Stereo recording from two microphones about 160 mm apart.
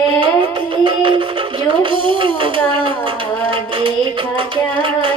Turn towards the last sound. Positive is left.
turn(degrees=-30)  # may be behind; listen again after turning